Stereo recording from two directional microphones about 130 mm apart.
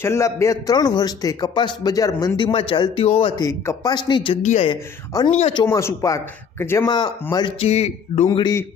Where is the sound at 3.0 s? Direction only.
50° left (ahead or behind).